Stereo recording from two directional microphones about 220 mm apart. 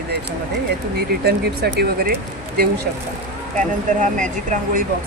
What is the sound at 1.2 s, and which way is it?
Speech, 45° right (ahead or behind).